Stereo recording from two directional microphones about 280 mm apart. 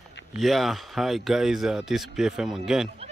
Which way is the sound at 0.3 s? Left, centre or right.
Centre.